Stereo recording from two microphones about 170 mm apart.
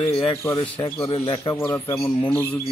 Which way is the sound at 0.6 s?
30° left (ahead or behind).